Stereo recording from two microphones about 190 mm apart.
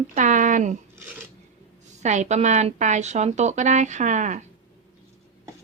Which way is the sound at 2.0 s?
40° right (ahead or behind).